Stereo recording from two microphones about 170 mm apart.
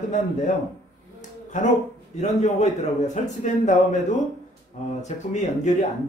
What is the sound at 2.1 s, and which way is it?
A man's voice, 40° left (ahead or behind).